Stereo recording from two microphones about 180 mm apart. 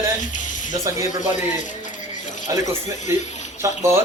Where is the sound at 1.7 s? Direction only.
45° left (ahead or behind).